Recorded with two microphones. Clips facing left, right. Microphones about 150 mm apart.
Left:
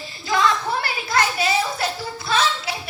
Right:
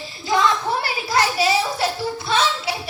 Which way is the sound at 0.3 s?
20° right (ahead or behind).